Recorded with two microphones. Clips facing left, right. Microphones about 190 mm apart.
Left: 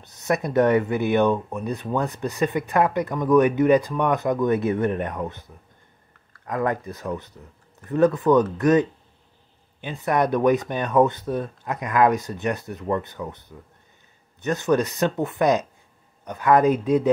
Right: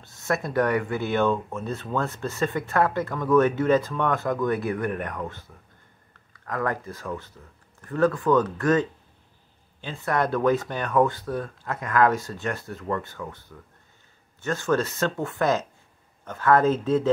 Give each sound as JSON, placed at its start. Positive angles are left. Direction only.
{"t": 0.0, "sound": "speech", "side_deg": 20}